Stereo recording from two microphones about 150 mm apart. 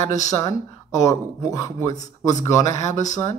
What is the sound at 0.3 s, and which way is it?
Speech, 20° left (ahead or behind).